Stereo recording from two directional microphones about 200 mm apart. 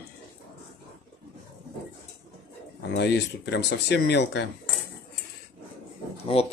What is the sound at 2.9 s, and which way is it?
Speech, 60° left (ahead or behind).